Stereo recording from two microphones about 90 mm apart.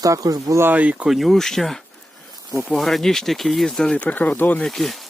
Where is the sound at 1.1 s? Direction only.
Centre (ahead or behind); by 4.6 s 15° left (ahead or behind).